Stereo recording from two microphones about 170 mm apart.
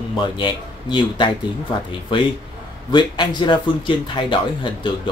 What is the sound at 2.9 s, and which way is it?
Speech, 25° left (ahead or behind).